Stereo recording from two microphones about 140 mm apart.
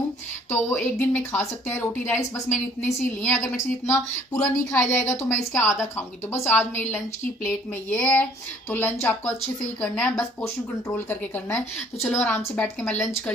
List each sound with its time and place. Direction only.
0.5 s speech: 15° left (ahead or behind)
3.5 s a woman's voice: 20° left (ahead or behind)